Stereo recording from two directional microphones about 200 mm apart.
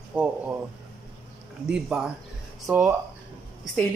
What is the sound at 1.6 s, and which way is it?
Speech, 5° right (ahead or behind).